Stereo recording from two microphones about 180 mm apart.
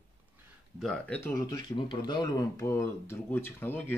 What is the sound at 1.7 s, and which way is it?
Speech, 25° left (ahead or behind).